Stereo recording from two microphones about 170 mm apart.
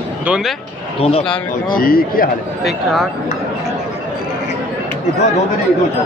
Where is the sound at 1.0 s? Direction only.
35° left (ahead or behind).